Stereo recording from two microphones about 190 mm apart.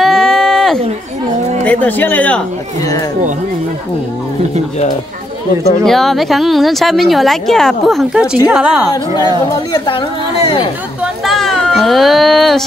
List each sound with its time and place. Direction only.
0.0 s a sound: centre (ahead or behind)
1.6 s speech: 10° left (ahead or behind)
5.9 s speech: centre (ahead or behind)
9.7 s speech: 25° left (ahead or behind)
11.2 s speech: centre (ahead or behind)